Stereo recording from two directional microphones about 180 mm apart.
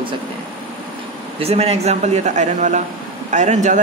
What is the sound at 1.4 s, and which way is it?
Speech, 35° right (ahead or behind).